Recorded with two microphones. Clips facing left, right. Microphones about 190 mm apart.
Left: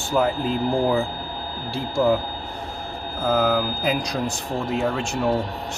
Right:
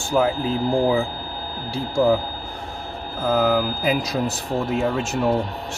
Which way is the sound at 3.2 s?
Centre (ahead or behind).